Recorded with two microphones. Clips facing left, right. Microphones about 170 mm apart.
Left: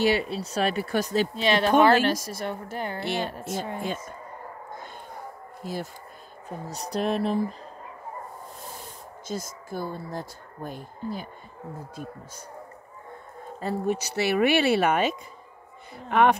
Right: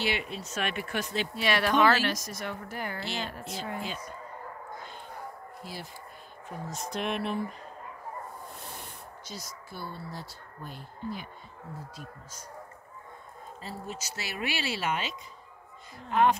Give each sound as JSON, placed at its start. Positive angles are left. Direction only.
{"t": 0.0, "sound": "speech", "side_deg": 35}
{"t": 1.3, "sound": "speech", "side_deg": 25}
{"t": 3.0, "sound": "speech", "side_deg": 55}
{"t": 5.6, "sound": "speech", "side_deg": 45}
{"t": 6.7, "sound": "speech", "side_deg": 35}
{"t": 9.3, "sound": "speech", "side_deg": 50}
{"t": 13.6, "sound": "speech", "side_deg": 55}
{"t": 16.1, "sound": "speech", "side_deg": 65}